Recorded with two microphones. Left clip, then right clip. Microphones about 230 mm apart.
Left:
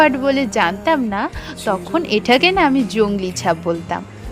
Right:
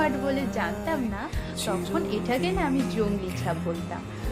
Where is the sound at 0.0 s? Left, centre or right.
Left.